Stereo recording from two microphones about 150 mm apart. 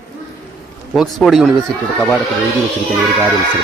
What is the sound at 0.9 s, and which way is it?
Speech, centre (ahead or behind).